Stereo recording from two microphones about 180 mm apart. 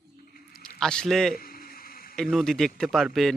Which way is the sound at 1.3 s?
55° left (ahead or behind).